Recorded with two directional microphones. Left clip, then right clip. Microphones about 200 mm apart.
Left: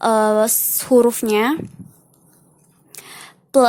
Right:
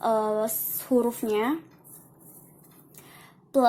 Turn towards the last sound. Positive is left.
turn(degrees=45)  # may be behind; listen again after turning